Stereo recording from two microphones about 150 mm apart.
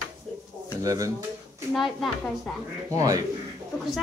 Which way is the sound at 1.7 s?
Centre (ahead or behind).